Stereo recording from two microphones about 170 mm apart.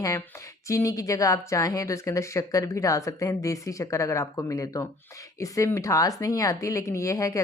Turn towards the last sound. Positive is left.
turn(degrees=20)  # may be behind; listen again after turning